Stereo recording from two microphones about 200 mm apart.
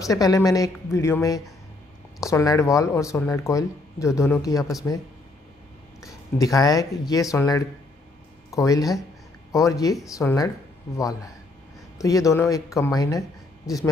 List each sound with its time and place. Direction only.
0.0 s speech: 15° left (ahead or behind)
6.0 s speech: 15° left (ahead or behind)
12.0 s speech: 15° left (ahead or behind)